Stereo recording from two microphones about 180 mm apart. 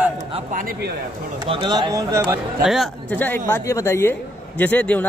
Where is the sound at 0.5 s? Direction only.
55° right (ahead or behind).